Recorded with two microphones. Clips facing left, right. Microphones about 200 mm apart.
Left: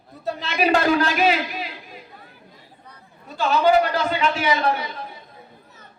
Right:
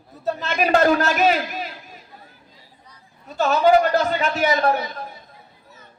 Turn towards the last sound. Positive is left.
turn(degrees=-45)  # may be behind; listen again after turning